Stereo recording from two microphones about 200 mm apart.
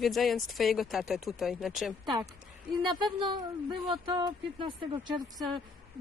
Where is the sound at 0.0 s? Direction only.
Centre (ahead or behind).